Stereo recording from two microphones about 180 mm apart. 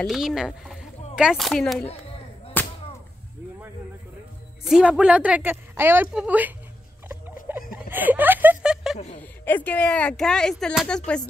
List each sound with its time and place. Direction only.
0.0 s speech: centre (ahead or behind)
2.6 s whip: 10° left (ahead or behind)
4.6 s a woman's voice: 5° right (ahead or behind)
7.5 s a sound: 10° right (ahead or behind)
7.9 s chuckle: 10° right (ahead or behind)
8.9 s speech: 40° left (ahead or behind)
9.2 s speech: 10° left (ahead or behind)